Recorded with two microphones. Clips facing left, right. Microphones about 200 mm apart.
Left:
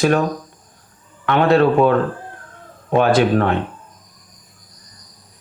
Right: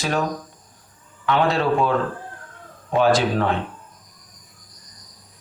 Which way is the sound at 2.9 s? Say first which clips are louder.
Left 4 dB; 60° left (ahead or behind).